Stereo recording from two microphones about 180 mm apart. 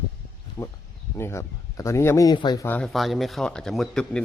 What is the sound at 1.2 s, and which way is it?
Speech, 15° left (ahead or behind).